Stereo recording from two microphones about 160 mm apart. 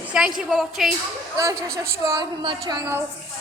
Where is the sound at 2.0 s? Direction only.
25° right (ahead or behind).